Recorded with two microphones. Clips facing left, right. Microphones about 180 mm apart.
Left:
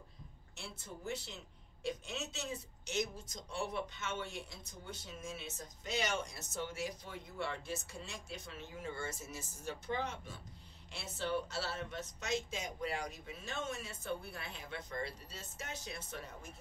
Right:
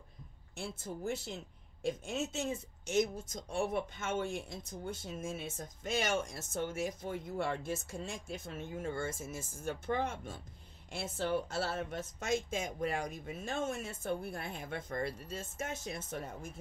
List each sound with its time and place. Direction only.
0.6 s speech: 50° right (ahead or behind)